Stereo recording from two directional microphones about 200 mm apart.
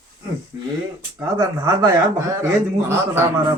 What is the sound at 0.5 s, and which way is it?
Speech, 15° right (ahead or behind).